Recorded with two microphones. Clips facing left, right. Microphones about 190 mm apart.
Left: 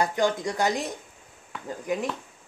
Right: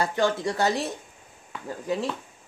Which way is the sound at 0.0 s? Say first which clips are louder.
Even; 15° left (ahead or behind).